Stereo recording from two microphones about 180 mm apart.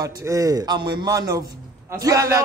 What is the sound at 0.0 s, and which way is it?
Speech, 20° right (ahead or behind).